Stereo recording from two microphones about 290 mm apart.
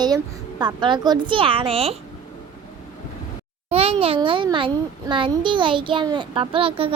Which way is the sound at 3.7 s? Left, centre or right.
Right.